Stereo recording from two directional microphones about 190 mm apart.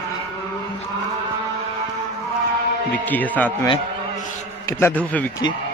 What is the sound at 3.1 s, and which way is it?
Speech, 10° left (ahead or behind).